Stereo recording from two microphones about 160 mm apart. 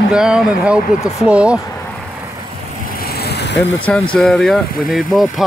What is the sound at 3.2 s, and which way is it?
Vehicle, 90° left.